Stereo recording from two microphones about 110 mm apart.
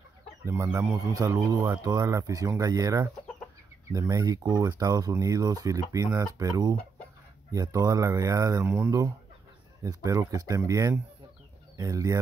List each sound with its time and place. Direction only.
0.5 s speech: 25° right (ahead or behind)
9.8 s speech: 30° right (ahead or behind)